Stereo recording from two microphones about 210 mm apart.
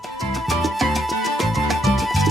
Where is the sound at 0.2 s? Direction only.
Centre (ahead or behind).